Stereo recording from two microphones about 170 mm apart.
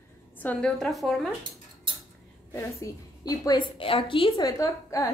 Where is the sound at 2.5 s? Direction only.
15° left (ahead or behind).